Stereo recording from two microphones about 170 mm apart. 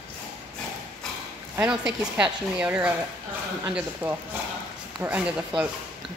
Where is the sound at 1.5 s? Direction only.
5° right (ahead or behind).